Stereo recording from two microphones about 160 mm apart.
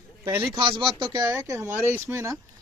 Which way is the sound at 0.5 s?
30° right (ahead or behind).